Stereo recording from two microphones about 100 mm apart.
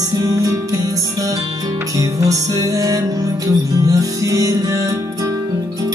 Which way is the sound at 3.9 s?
35° right (ahead or behind).